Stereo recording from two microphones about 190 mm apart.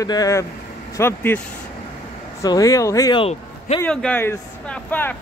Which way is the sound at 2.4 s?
20° left (ahead or behind).